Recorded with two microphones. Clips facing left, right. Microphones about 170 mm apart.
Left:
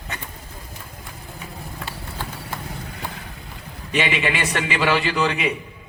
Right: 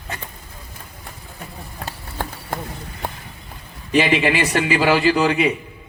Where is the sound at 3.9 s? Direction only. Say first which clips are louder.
Right 6 dB; 35° right (ahead or behind).